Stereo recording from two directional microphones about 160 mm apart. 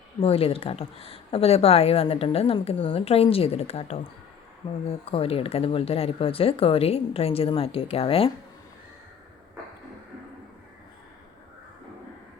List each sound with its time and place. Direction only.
0.2 s speech: 35° left (ahead or behind)